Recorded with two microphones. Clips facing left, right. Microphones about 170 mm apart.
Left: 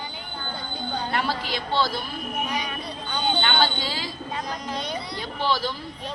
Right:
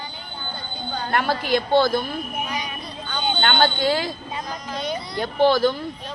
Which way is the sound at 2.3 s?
Centre (ahead or behind).